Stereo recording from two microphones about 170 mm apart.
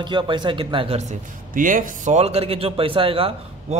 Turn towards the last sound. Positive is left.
turn(degrees=-35)  # may be behind; listen again after turning